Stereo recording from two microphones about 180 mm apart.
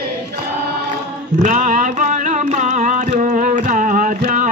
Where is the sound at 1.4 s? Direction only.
45° right (ahead or behind).